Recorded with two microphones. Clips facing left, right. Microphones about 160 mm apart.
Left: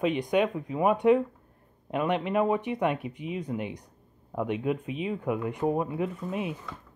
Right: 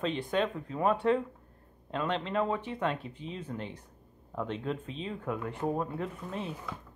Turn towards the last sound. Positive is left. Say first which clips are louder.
# left 6 dB
turn(degrees=10)  # may be behind; listen again after turning